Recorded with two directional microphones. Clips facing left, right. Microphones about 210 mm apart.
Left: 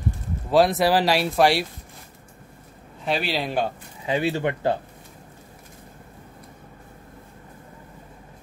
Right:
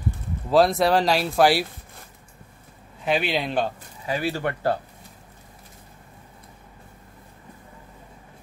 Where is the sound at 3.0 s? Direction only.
Centre (ahead or behind).